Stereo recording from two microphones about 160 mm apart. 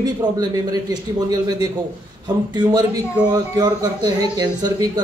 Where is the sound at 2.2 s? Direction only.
25° right (ahead or behind).